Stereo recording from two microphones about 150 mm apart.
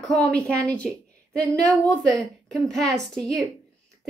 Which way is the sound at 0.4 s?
20° right (ahead or behind).